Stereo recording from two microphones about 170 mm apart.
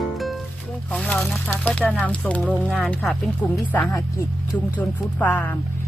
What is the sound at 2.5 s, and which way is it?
Speech, centre (ahead or behind).